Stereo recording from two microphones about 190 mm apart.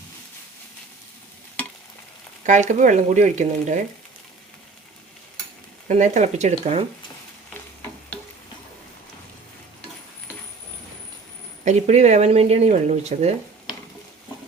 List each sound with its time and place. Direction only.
2.5 s speech: 40° right (ahead or behind)
5.9 s speech: 40° right (ahead or behind)
11.6 s speech: 35° right (ahead or behind)